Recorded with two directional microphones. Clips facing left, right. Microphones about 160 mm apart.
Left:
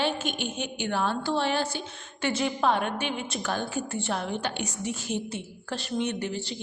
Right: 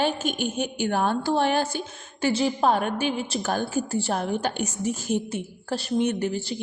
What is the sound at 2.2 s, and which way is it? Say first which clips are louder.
A woman's voice: right 4 dB; 35° right (ahead or behind).